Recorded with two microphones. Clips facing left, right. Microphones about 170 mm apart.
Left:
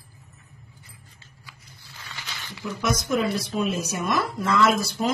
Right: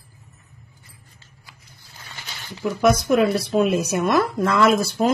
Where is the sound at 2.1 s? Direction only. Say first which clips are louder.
Right 1 dB; 45° right (ahead or behind).